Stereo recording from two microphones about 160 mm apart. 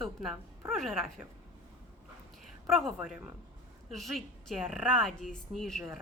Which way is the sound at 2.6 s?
Centre (ahead or behind).